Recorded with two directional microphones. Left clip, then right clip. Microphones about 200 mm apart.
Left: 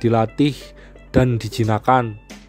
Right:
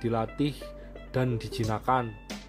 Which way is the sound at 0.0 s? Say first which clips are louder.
Left 11 dB; 50° left (ahead or behind).